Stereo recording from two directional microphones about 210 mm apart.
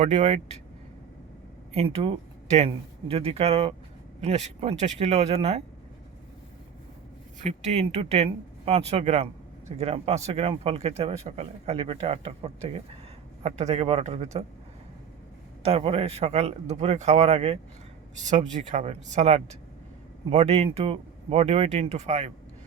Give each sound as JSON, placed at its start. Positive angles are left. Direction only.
{"t": 0.0, "sound": "speech", "side_deg": -30}
{"t": 1.7, "sound": "speech", "side_deg": -30}
{"t": 7.4, "sound": "speech", "side_deg": -30}
{"t": 15.6, "sound": "speech", "side_deg": -30}